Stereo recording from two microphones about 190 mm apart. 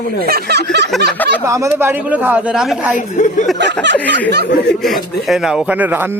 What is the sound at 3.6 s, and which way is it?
Speech, 65° right (ahead or behind).